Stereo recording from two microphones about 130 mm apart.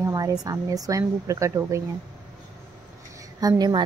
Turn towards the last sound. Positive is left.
turn(degrees=-30)  # may be behind; listen again after turning